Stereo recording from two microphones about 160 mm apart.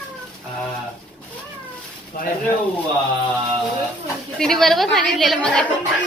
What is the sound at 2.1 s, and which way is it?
Speech, 65° left (ahead or behind).